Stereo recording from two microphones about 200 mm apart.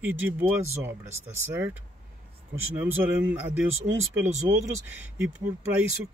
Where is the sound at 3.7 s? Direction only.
80° right.